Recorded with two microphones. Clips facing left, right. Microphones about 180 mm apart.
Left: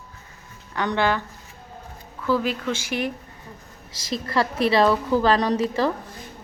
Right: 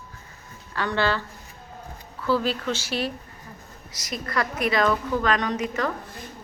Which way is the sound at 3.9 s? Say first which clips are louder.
Left 4 dB; 30° left (ahead or behind).